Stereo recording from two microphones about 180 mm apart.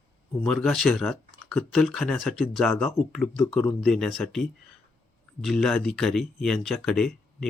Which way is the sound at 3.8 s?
5° left (ahead or behind).